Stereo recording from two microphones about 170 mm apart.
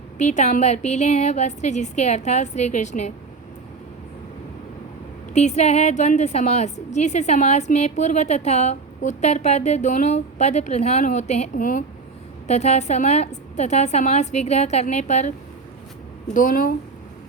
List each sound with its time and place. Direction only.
0.2 s a woman's voice: 45° left (ahead or behind)
5.3 s a woman's voice: 40° left (ahead or behind)
16.3 s a woman's voice: 55° left (ahead or behind)